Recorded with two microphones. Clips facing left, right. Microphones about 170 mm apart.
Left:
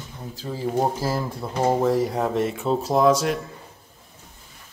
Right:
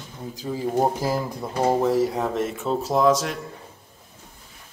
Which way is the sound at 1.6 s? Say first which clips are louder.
Even; centre (ahead or behind).